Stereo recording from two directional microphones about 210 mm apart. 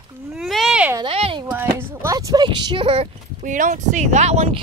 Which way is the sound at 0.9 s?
25° right (ahead or behind).